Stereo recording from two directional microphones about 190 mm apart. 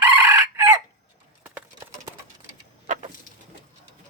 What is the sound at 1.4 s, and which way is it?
Clip-clop, 10° right (ahead or behind).